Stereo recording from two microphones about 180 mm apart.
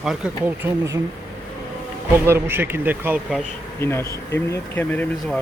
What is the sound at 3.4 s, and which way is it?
Speech, 15° left (ahead or behind).